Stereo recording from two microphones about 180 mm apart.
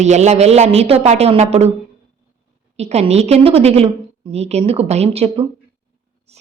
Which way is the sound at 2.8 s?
35° right (ahead or behind).